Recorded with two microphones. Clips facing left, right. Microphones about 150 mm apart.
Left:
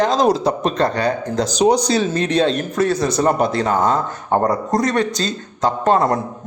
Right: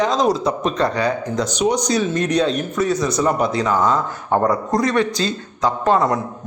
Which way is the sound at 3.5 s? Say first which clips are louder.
Left 1 dB; 55° left (ahead or behind).